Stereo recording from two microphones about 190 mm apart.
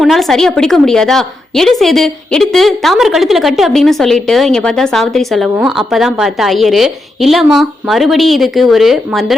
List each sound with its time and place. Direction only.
0.0 s a woman's voice: centre (ahead or behind)